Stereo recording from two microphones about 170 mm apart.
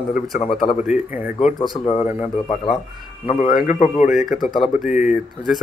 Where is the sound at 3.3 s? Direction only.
40° left (ahead or behind).